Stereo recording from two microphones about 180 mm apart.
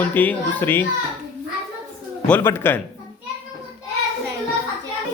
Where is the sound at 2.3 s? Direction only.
10° left (ahead or behind).